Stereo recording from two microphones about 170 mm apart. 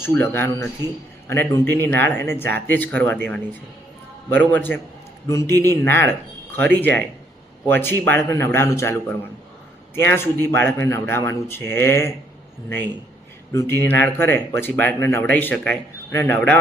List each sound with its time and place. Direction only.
0.0 s speech: 10° left (ahead or behind)
4.3 s speech: 10° left (ahead or behind)
13.5 s speech: 15° left (ahead or behind)